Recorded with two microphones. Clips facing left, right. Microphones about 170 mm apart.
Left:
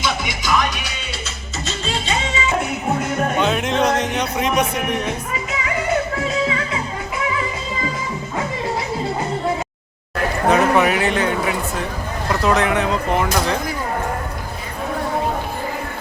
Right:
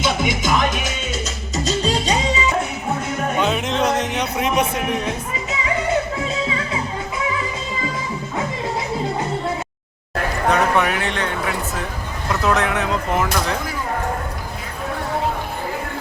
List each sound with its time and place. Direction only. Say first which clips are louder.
0.0 s music: right 3 dB; 50° right (ahead or behind)
3.3 s music: even; centre (ahead or behind)
10.5 s a sound: left 3 dB; 5° left (ahead or behind)
12.3 s speech: left 2 dB; centre (ahead or behind)